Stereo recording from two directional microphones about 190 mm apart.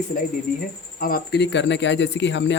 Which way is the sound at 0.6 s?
50° left (ahead or behind).